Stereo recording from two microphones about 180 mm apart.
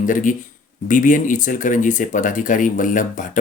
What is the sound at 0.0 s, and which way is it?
Speech, 45° left (ahead or behind).